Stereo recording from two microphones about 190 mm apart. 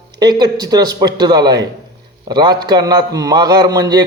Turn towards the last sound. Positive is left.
turn(degrees=-20)  # may be behind; listen again after turning